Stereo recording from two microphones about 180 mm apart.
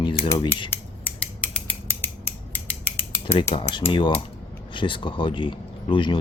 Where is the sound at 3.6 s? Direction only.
30° left (ahead or behind).